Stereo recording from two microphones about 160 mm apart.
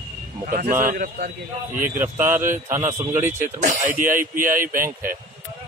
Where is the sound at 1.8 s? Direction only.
15° right (ahead or behind).